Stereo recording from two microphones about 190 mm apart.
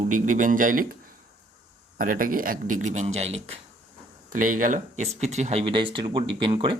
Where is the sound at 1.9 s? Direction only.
45° right (ahead or behind).